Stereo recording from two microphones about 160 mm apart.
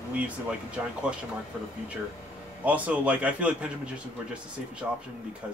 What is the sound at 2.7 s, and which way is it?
A man's voice, 10° right (ahead or behind).